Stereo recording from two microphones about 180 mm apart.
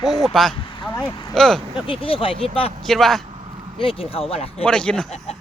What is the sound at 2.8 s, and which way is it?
Speech, centre (ahead or behind).